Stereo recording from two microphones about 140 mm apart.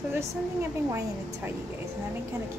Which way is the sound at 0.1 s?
20° right (ahead or behind).